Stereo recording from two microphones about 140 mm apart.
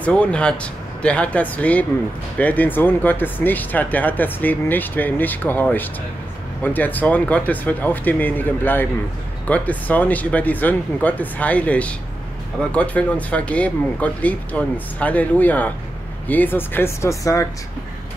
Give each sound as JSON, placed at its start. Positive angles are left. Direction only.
{"t": 0.0, "sound": "speech", "side_deg": 10}